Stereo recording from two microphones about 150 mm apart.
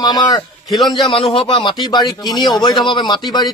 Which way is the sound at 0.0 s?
25° left (ahead or behind).